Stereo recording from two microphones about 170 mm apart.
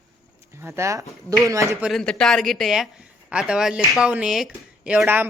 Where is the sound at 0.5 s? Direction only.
15° right (ahead or behind).